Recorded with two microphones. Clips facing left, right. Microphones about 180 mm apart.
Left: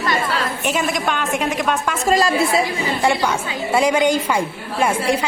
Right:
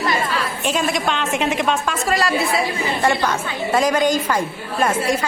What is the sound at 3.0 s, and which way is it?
A woman's voice, 10° left (ahead or behind).